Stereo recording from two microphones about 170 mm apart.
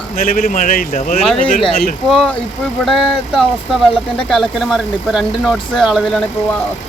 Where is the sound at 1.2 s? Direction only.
Centre (ahead or behind).